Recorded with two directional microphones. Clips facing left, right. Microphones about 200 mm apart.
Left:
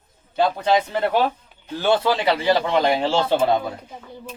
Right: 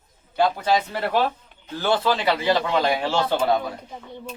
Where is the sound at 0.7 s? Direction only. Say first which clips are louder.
Left 3 dB; 20° left (ahead or behind).